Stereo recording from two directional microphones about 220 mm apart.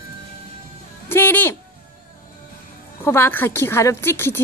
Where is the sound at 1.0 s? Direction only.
10° left (ahead or behind).